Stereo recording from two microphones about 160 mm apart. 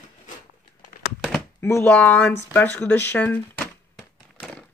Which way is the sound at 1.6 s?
15° left (ahead or behind).